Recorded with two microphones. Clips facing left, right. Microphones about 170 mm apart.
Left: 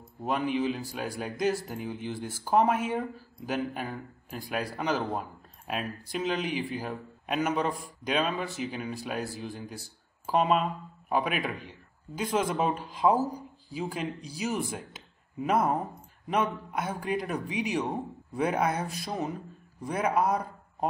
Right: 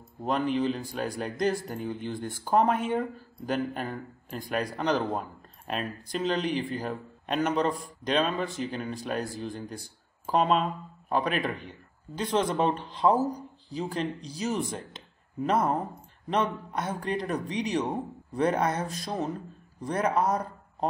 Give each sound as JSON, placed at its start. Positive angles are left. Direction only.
{"t": 0.2, "sound": "speech", "side_deg": 5}